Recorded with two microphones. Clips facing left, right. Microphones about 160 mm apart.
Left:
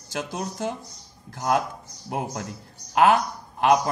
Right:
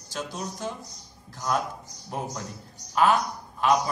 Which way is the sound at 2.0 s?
70° left (ahead or behind).